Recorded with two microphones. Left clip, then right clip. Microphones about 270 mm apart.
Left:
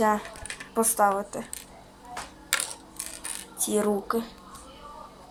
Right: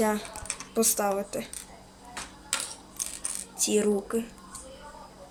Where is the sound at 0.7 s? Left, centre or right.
Centre.